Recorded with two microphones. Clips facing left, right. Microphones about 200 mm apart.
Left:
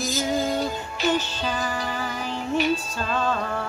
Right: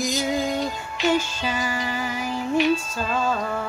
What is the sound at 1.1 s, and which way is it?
Music, 10° right (ahead or behind).